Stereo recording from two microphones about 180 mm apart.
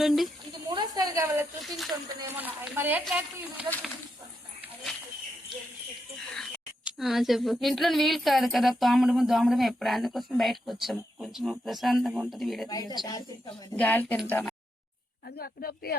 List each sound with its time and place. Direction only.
0.0 s speech: centre (ahead or behind)
0.7 s a sound: 25° right (ahead or behind)
1.6 s speech: centre (ahead or behind)
2.4 s a woman's voice: 10° right (ahead or behind)
6.3 s speech: centre (ahead or behind)
12.6 s speech: 20° left (ahead or behind)
13.7 s a woman's voice: 10° left (ahead or behind)
15.4 s speech: 60° left (ahead or behind)